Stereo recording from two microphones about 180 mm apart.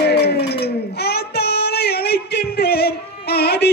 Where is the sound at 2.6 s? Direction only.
60° left (ahead or behind).